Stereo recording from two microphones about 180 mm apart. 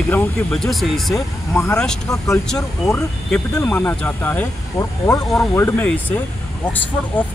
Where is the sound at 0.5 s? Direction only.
Centre (ahead or behind).